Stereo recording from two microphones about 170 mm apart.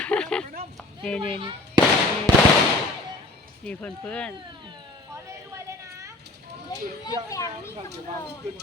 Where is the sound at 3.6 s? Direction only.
5° left (ahead or behind).